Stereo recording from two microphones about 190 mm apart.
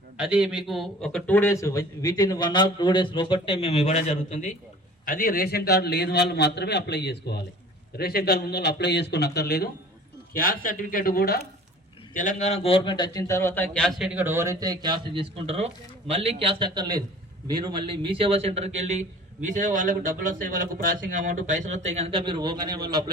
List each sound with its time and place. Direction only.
0.2 s a man's voice: 5° right (ahead or behind); by 4.5 s 40° left (ahead or behind)
5.0 s a man's voice: 50° left (ahead or behind)
12.1 s a man's voice: 45° left (ahead or behind); by 23.1 s 20° right (ahead or behind)